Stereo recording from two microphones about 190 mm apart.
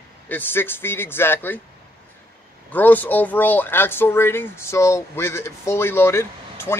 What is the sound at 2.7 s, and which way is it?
Speech, 10° left (ahead or behind).